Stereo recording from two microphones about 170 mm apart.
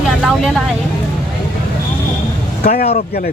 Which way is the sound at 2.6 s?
55° left (ahead or behind).